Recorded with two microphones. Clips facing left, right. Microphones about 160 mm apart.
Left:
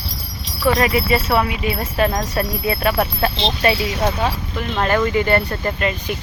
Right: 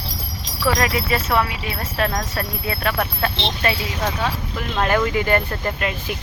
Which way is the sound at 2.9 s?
30° left (ahead or behind).